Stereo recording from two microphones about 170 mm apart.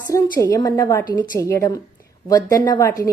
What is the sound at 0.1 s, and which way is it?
A woman's voice, 20° left (ahead or behind).